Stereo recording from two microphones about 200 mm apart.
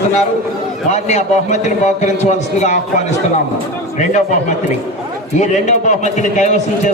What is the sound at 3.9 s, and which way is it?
A man's voice, 35° left (ahead or behind).